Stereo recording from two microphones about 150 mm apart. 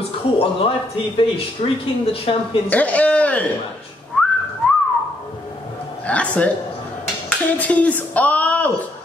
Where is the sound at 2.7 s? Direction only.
10° left (ahead or behind).